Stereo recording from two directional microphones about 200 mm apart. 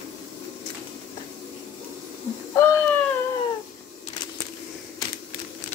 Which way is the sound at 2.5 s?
15° left (ahead or behind).